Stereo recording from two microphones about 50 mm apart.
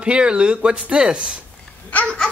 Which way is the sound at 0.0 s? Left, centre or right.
Right.